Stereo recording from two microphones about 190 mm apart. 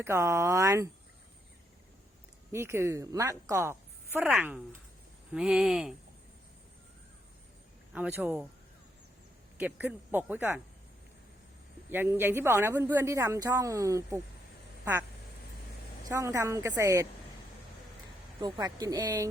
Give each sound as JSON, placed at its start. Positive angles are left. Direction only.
{"t": 0.0, "sound": "a woman's voice", "side_deg": -15}
{"t": 2.5, "sound": "a woman's voice", "side_deg": -15}
{"t": 7.9, "sound": "a woman's voice", "side_deg": -5}
{"t": 9.6, "sound": "a woman's voice", "side_deg": -10}
{"t": 11.9, "sound": "a woman's voice", "side_deg": -10}
{"t": 16.0, "sound": "a woman's voice", "side_deg": -15}
{"t": 18.3, "sound": "speech", "side_deg": -20}